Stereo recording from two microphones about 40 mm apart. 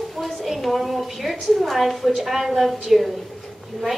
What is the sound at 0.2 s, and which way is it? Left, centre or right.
A woman's voice, centre.